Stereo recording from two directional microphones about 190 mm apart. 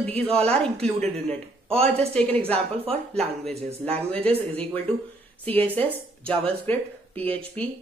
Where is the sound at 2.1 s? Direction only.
10° left (ahead or behind).